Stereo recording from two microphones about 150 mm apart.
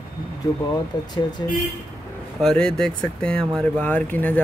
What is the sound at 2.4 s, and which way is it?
Speech, 5° left (ahead or behind).